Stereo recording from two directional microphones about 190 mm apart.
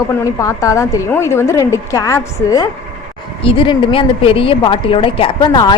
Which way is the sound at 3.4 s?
25° left (ahead or behind).